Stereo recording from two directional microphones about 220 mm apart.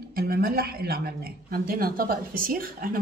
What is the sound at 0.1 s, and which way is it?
Speech, 40° right (ahead or behind).